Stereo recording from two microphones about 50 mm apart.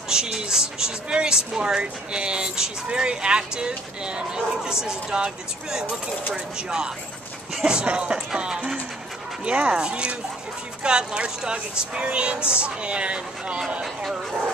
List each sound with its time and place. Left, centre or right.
0.1 s speech: centre